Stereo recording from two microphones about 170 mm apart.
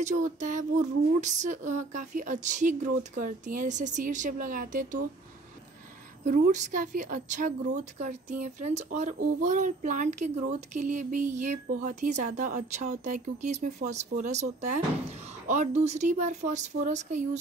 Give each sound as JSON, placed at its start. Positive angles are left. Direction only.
{"t": 0.0, "sound": "speech", "side_deg": -45}
{"t": 6.2, "sound": "speech", "side_deg": -50}